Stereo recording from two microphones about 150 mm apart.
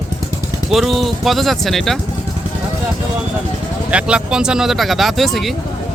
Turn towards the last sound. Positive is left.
turn(degrees=0)  # may be behind; listen again after turning